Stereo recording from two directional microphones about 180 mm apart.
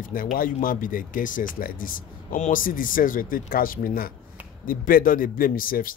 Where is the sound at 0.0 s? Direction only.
50° left (ahead or behind).